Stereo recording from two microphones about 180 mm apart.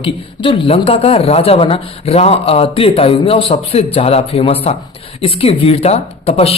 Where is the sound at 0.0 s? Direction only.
30° left (ahead or behind).